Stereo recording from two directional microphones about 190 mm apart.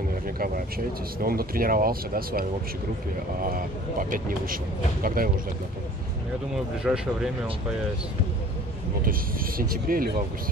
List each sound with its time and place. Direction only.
0.4 s speech: 50° right (ahead or behind)
5.0 s speech: 50° right (ahead or behind)
6.8 s speech: 5° right (ahead or behind)
9.6 s speech: 50° right (ahead or behind)